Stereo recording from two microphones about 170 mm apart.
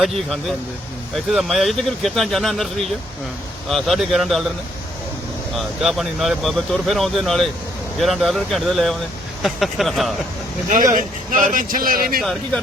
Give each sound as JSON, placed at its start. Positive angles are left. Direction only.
{"t": 0.0, "sound": "speech", "side_deg": 0}
{"t": 5.5, "sound": "speech", "side_deg": 0}
{"t": 10.9, "sound": "speech", "side_deg": -50}